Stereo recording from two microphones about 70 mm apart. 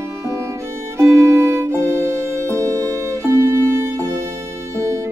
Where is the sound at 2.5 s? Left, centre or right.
Right.